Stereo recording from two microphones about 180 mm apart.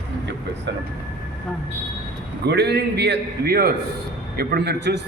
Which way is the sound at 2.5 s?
70° right (ahead or behind).